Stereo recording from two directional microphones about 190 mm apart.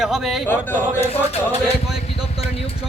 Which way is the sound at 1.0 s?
35° left (ahead or behind).